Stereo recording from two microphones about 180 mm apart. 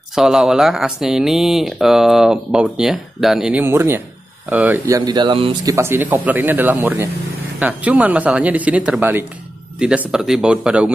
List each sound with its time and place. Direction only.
0.1 s speech: centre (ahead or behind); by 5.8 s 25° right (ahead or behind)
5.8 s speech: 10° right (ahead or behind)